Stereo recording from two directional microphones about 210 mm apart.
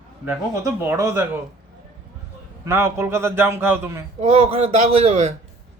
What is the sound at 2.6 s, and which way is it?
Speech, 10° right (ahead or behind).